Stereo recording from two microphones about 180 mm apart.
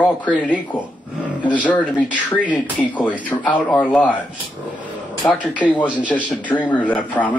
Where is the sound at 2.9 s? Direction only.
10° left (ahead or behind).